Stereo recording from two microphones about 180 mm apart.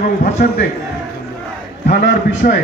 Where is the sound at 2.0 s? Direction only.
55° left (ahead or behind).